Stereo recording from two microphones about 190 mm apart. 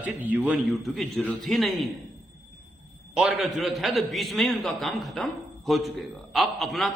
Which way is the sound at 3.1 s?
Centre (ahead or behind).